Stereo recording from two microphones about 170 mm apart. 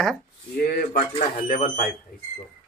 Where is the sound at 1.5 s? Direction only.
50° left (ahead or behind).